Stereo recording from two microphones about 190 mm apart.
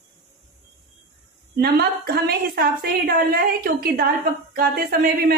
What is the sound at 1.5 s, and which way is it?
A woman's voice, 55° right (ahead or behind).